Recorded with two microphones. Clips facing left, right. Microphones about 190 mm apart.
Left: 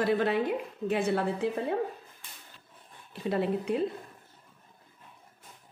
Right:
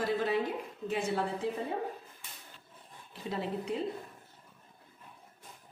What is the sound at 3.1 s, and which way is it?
Speech, 60° left (ahead or behind).